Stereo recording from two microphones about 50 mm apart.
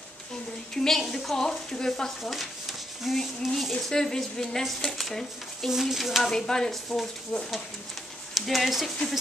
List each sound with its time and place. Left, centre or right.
0.7 s speech: centre
3.7 s speech: centre
6.3 s speech: centre